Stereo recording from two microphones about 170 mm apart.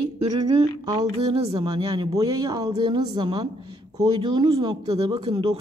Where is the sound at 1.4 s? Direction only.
30° right (ahead or behind).